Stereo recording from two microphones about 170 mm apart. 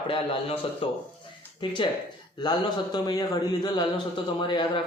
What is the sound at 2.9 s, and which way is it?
A man's voice, 25° left (ahead or behind).